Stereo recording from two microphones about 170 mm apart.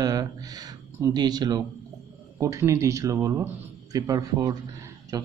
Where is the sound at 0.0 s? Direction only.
20° right (ahead or behind).